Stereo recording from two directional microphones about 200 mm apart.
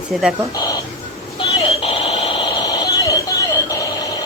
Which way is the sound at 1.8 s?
30° left (ahead or behind).